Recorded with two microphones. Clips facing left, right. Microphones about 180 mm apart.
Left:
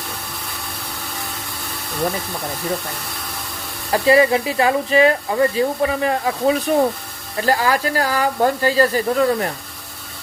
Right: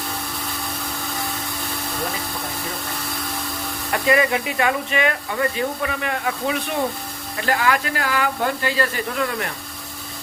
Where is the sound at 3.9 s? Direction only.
30° left (ahead or behind).